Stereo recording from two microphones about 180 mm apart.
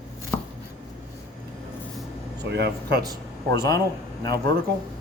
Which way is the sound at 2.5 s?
70° right (ahead or behind).